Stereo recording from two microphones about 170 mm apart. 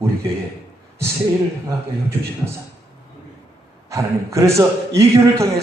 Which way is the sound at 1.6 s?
15° right (ahead or behind).